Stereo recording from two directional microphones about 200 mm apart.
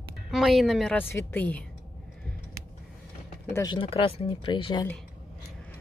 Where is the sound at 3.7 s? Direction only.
25° left (ahead or behind).